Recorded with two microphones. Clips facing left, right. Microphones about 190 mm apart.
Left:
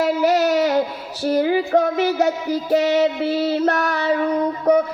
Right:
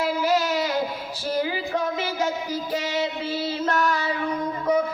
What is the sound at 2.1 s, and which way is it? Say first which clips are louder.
Music: left 7 dB; 70° left (ahead or behind).